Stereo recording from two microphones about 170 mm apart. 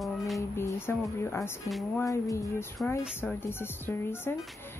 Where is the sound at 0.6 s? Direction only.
15° left (ahead or behind).